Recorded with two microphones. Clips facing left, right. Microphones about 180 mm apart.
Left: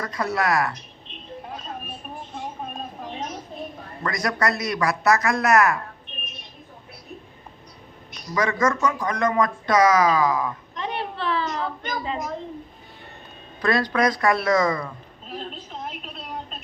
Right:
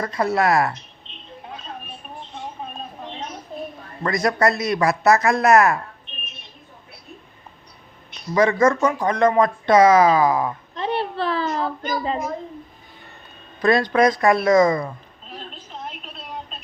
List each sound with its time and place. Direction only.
0.0 s speech: 30° right (ahead or behind)
4.0 s speech: 25° right (ahead or behind)
8.1 s speech: 30° right (ahead or behind)
13.6 s speech: 25° right (ahead or behind)